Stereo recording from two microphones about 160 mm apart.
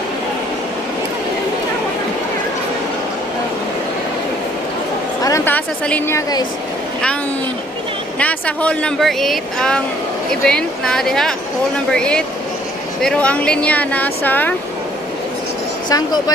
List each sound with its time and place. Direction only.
5.2 s a sound: 15° left (ahead or behind)
8.2 s speech: 10° left (ahead or behind)
15.9 s speech: 25° left (ahead or behind)